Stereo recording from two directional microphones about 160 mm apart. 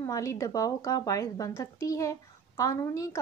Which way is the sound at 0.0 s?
20° left (ahead or behind).